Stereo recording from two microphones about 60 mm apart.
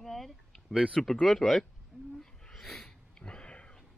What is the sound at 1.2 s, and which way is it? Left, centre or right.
Speech, centre.